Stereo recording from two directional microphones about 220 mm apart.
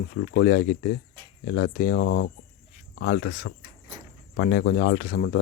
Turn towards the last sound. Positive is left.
turn(degrees=40)  # may be behind; listen again after turning